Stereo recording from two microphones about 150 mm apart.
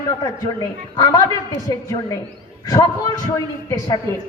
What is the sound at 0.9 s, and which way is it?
A man's voice, 25° left (ahead or behind).